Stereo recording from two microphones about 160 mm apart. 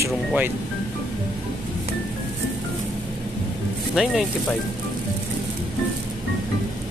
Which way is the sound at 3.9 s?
Centre (ahead or behind).